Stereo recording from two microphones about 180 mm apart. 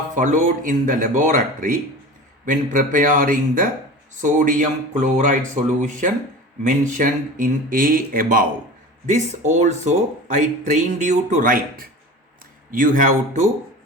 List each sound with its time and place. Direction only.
0.2 s speech: 45° right (ahead or behind)
9.0 s speech: 40° right (ahead or behind)